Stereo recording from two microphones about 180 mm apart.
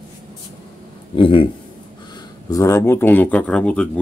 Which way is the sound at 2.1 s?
15° left (ahead or behind).